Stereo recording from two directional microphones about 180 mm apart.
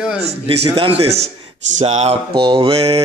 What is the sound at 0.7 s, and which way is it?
Mantra, 30° right (ahead or behind).